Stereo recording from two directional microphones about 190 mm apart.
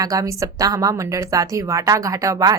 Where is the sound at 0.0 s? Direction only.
15° right (ahead or behind).